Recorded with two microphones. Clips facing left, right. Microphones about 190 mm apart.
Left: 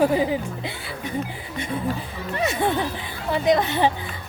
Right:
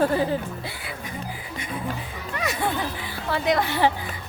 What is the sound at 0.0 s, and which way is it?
Speech, 15° left (ahead or behind).